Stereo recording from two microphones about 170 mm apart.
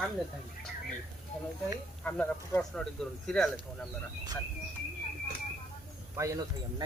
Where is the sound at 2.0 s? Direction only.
10° left (ahead or behind).